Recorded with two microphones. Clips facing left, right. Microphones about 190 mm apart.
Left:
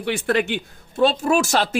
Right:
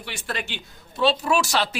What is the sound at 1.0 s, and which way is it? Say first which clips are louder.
Speech: left 4 dB; 45° left (ahead or behind).